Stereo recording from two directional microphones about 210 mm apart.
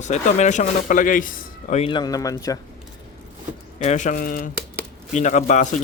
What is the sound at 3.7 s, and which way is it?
Speech, 35° left (ahead or behind).